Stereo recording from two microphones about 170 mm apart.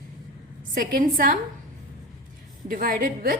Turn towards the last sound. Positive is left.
turn(degrees=-55)  # may be behind; listen again after turning